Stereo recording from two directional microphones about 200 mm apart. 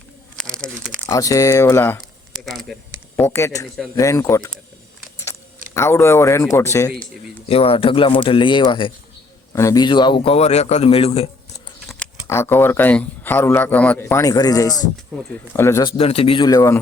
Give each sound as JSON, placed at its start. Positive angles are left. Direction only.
{"t": 0.3, "sound": "crumpling", "side_deg": 5}
{"t": 1.1, "sound": "speech", "side_deg": 15}
{"t": 7.4, "sound": "a man's voice", "side_deg": 30}
{"t": 11.9, "sound": "speech", "side_deg": 10}
{"t": 16.0, "sound": "a man's voice", "side_deg": 30}